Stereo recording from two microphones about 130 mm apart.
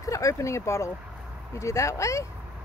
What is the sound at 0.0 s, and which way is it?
Speech, 25° left (ahead or behind).